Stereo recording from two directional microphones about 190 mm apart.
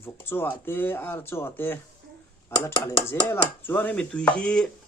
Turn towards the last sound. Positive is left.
turn(degrees=5)  # may be behind; listen again after turning